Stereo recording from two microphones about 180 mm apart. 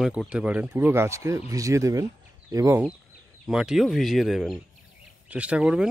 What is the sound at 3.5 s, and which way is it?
Speech, 5° right (ahead or behind).